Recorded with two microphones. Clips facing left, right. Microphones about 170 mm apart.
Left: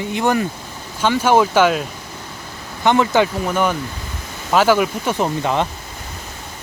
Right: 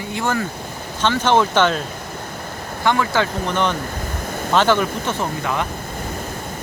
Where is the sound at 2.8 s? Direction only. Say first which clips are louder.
Left 4 dB; 20° left (ahead or behind).